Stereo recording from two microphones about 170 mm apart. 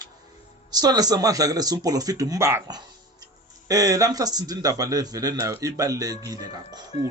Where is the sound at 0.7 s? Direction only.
25° right (ahead or behind).